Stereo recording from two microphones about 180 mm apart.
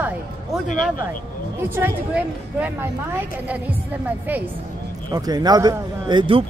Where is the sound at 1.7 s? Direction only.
10° right (ahead or behind).